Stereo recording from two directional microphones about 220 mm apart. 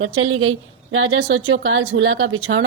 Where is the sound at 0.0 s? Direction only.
65° right (ahead or behind).